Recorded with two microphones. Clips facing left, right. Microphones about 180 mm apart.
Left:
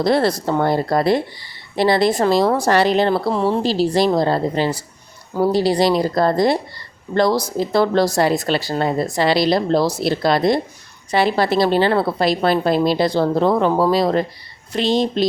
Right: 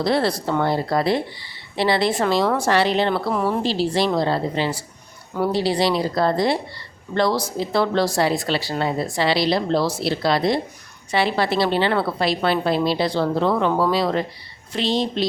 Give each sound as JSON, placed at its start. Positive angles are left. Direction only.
{"t": 0.0, "sound": "speech", "side_deg": 45}
{"t": 3.6, "sound": "a woman's voice", "side_deg": 40}